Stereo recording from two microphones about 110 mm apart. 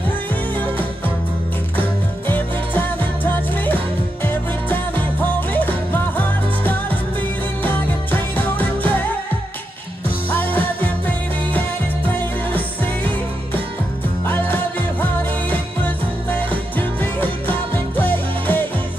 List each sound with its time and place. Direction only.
0.6 s music: 15° left (ahead or behind)
10.3 s music: 15° left (ahead or behind)
12.2 s music: 15° left (ahead or behind)
14.2 s music: 15° left (ahead or behind)